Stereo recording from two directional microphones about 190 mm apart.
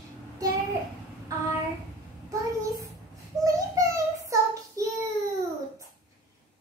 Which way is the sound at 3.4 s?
15° right (ahead or behind).